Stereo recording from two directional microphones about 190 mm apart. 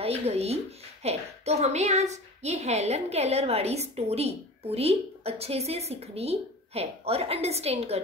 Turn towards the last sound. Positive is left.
turn(degrees=-35)  # may be behind; listen again after turning